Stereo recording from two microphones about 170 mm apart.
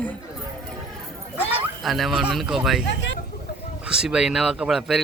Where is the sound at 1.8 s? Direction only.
Centre (ahead or behind).